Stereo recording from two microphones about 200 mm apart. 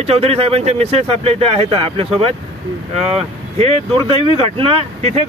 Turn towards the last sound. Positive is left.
turn(degrees=-30)  # may be behind; listen again after turning